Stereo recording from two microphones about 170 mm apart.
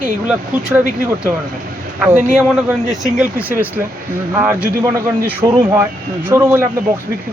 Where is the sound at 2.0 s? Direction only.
5° right (ahead or behind).